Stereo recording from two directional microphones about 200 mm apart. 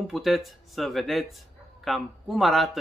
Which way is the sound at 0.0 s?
Centre (ahead or behind).